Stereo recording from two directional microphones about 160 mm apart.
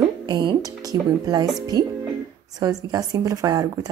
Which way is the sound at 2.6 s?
20° right (ahead or behind).